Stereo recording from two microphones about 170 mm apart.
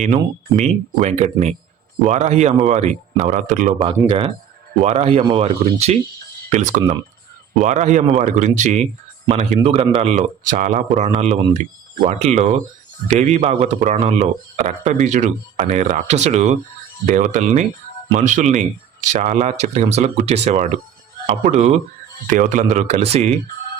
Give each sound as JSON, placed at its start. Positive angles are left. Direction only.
{"t": 0.0, "sound": "speech", "side_deg": -45}
{"t": 3.8, "sound": "speech", "side_deg": -30}